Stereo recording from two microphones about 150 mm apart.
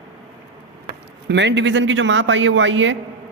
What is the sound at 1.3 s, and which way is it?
Speech, 90° right.